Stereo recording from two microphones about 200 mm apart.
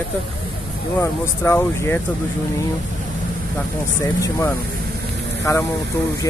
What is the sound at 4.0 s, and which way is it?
Speech, 15° left (ahead or behind).